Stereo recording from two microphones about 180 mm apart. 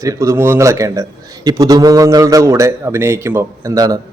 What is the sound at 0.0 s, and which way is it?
A man's voice, 15° right (ahead or behind).